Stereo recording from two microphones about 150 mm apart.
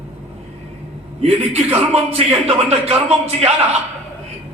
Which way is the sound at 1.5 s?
45° right (ahead or behind).